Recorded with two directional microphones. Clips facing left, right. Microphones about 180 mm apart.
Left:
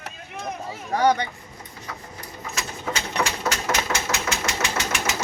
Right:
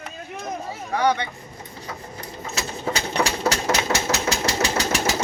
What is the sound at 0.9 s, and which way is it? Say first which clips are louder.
Speech: left 1 dB; 40° left (ahead or behind).